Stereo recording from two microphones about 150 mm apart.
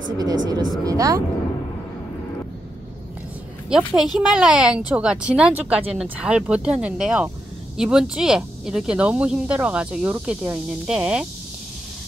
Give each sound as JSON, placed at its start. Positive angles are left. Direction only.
{"t": 0.2, "sound": "speech", "side_deg": -25}
{"t": 3.7, "sound": "speech", "side_deg": -5}